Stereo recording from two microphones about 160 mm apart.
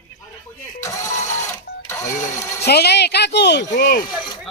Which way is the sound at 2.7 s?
90° left.